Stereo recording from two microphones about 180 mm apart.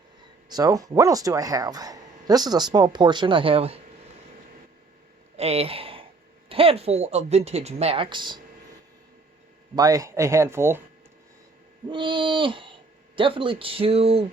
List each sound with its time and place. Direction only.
0.4 s speech: 20° right (ahead or behind)
5.4 s speech: 35° right (ahead or behind)
9.7 s speech: 20° right (ahead or behind)
11.9 s speech: 25° right (ahead or behind)